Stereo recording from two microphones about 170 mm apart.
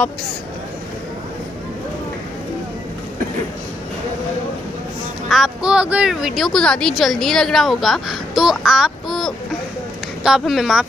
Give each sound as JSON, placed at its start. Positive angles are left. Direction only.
{"t": 5.3, "sound": "speech", "side_deg": -5}